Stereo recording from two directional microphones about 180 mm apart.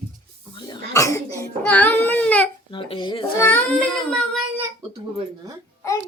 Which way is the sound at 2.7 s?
30° left (ahead or behind).